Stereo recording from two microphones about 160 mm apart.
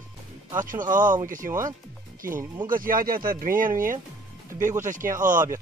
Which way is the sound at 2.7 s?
60° right (ahead or behind).